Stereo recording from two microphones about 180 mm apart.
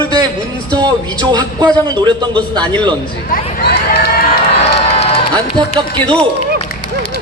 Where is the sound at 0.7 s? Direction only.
25° right (ahead or behind).